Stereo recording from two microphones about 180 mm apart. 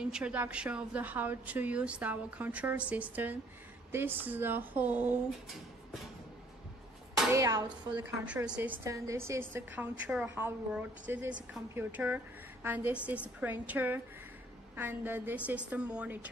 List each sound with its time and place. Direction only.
0.0 s a woman's voice: 5° right (ahead or behind)
7.3 s a woman's voice: 20° right (ahead or behind)